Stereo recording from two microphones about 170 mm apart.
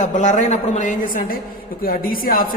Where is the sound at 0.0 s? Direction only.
45° left (ahead or behind).